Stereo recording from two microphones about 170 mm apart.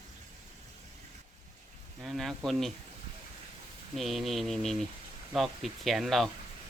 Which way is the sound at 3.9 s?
Centre (ahead or behind).